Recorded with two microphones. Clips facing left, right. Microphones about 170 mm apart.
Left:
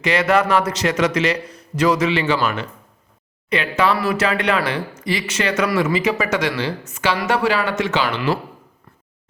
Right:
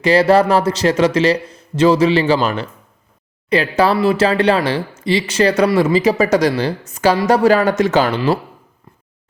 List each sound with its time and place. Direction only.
0.0 s speech: 30° right (ahead or behind)